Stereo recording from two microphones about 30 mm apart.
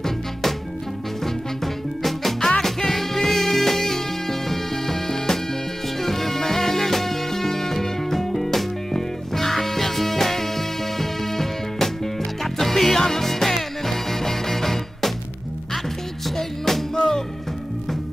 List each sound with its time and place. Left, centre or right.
0.0 s music: centre
16.3 s music: centre
16.9 s music: centre